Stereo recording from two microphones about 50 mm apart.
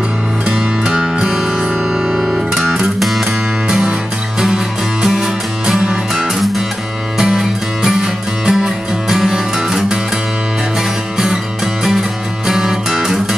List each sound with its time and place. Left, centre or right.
0.5 s music: centre
2.2 s music: centre
3.6 s music: centre
5.0 s music: centre
11.1 s music: centre